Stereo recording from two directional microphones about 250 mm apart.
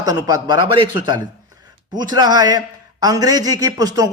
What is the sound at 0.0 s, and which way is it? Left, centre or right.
Speech, centre.